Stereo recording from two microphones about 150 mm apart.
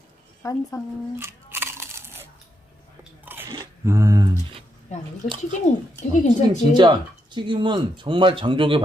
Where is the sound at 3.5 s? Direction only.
20° right (ahead or behind).